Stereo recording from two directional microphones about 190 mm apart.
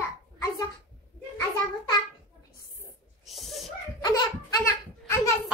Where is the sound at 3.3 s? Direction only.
Centre (ahead or behind).